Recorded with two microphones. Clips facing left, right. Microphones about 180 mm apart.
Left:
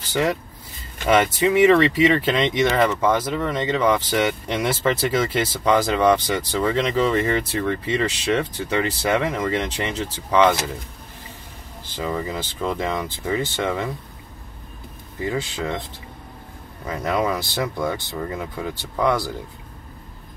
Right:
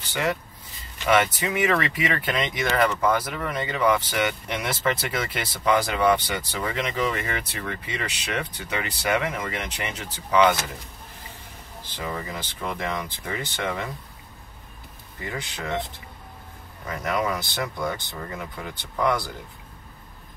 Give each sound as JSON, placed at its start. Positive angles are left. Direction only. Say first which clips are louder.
{"t": 0.1, "sound": "speech", "louder": "left 5 dB", "side_deg": 35}
{"t": 12.0, "sound": "speech", "louder": "left 6 dB", "side_deg": 25}
{"t": 15.2, "sound": "speech", "louder": "left 7 dB", "side_deg": 25}
{"t": 16.8, "sound": "speech", "louder": "left 4 dB", "side_deg": 25}